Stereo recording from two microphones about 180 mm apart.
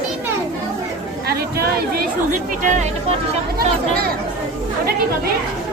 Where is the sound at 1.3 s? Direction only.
60° right (ahead or behind).